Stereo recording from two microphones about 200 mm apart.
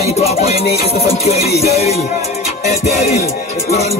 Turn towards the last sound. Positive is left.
turn(degrees=35)  # may be behind; listen again after turning